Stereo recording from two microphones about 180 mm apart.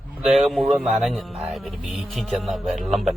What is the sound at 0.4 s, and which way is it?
Speech, centre (ahead or behind).